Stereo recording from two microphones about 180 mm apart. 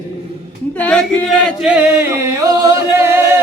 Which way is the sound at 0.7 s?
5° left (ahead or behind).